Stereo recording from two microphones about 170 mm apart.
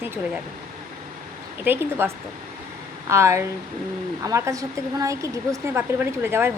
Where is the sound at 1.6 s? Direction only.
10° right (ahead or behind).